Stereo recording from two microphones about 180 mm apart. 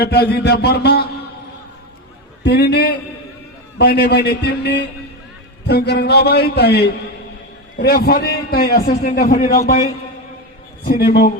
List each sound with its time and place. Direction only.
0.0 s a man's voice: 60° left (ahead or behind)
2.4 s a man's voice: 65° left (ahead or behind)
10.8 s a man's voice: 60° left (ahead or behind)